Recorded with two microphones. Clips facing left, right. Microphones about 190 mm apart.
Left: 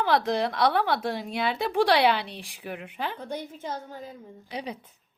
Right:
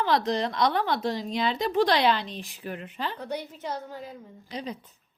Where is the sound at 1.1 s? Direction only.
60° left (ahead or behind).